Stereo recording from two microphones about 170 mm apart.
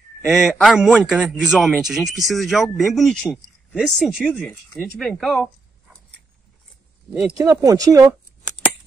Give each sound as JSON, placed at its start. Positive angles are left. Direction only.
{"t": 0.3, "sound": "a man's voice", "side_deg": 0}
{"t": 7.3, "sound": "speech", "side_deg": -20}